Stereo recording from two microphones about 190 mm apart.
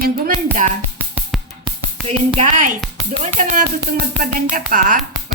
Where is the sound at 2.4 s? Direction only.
40° right (ahead or behind).